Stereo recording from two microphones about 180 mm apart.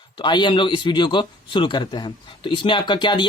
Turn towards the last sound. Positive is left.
turn(degrees=25)  # may be behind; listen again after turning